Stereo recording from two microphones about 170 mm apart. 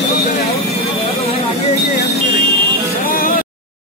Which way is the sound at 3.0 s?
55° left (ahead or behind).